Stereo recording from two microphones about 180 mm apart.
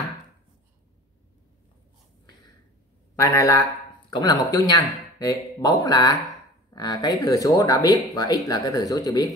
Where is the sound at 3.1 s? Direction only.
15° left (ahead or behind).